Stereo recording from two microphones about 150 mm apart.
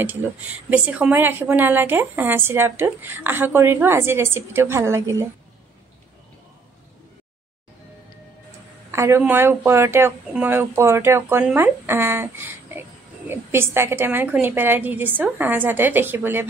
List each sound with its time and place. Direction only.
0.0 s a woman's voice: 10° right (ahead or behind)
8.9 s a woman's voice: 15° right (ahead or behind)